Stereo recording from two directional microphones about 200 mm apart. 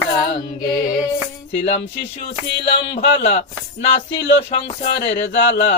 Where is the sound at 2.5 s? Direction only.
60° left (ahead or behind).